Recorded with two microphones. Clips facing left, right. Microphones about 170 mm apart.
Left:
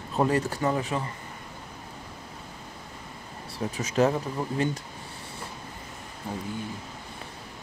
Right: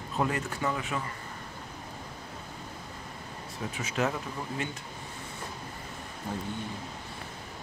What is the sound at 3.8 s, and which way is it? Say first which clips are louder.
Speech: left 7 dB; 40° left (ahead or behind).